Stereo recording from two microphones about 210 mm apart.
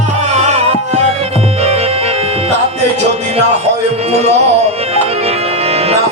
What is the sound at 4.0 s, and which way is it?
Music, 30° right (ahead or behind).